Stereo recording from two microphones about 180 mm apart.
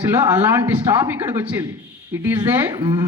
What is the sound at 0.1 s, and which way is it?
A man's voice, 10° right (ahead or behind).